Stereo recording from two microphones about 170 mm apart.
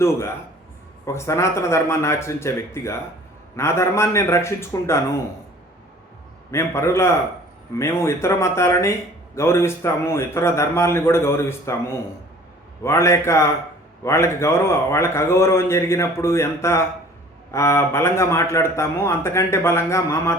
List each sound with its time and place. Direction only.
0.0 s speech: 15° left (ahead or behind)
6.5 s speech: 15° left (ahead or behind)